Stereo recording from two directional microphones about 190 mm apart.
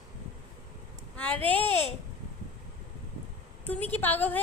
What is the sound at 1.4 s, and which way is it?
Speech, 10° left (ahead or behind).